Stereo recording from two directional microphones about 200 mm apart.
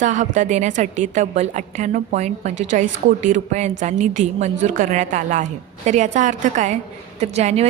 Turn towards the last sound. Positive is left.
turn(degrees=-35)  # may be behind; listen again after turning